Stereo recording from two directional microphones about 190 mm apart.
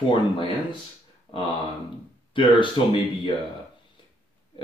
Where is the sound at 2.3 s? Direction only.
25° left (ahead or behind).